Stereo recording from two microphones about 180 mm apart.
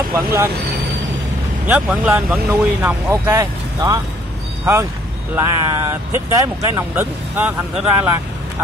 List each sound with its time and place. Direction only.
0.1 s speech: 15° right (ahead or behind)
1.7 s speech: 10° right (ahead or behind)